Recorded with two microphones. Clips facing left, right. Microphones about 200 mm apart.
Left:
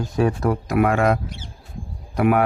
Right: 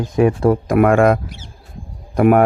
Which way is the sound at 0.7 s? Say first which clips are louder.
Right 5 dB; 50° right (ahead or behind).